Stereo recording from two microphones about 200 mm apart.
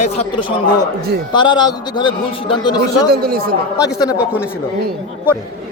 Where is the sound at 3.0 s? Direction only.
50° right (ahead or behind).